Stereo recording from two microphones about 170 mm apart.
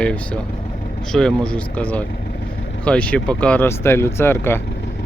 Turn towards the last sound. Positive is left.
turn(degrees=15)  # may be behind; listen again after turning